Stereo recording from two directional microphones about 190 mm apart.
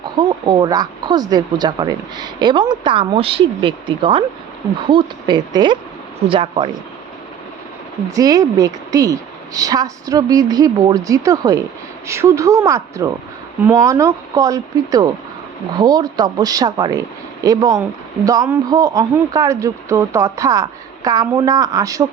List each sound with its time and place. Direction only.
0.2 s speech: 20° right (ahead or behind)
8.0 s speech: 20° right (ahead or behind)